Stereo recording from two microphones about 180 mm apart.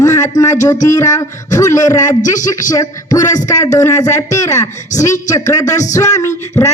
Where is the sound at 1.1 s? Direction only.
20° left (ahead or behind).